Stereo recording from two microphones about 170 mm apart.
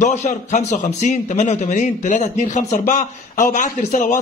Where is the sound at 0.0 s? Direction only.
45° left (ahead or behind).